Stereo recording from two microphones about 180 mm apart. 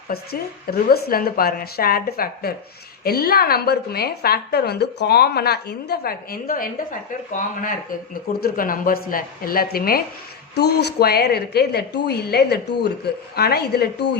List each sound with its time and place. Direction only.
0.1 s a woman's voice: 60° left (ahead or behind)
10.5 s a woman's voice: 65° left (ahead or behind)